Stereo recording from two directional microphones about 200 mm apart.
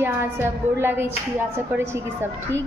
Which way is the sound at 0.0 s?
10° right (ahead or behind).